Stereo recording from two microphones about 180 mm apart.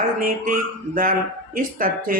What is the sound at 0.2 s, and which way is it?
Speech, 50° right (ahead or behind).